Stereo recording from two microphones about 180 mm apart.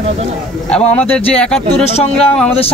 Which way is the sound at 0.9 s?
10° left (ahead or behind).